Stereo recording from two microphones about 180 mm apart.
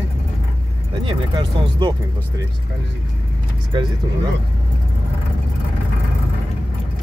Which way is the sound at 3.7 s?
25° right (ahead or behind).